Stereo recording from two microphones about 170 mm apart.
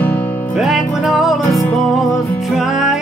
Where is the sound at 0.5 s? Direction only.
Centre (ahead or behind).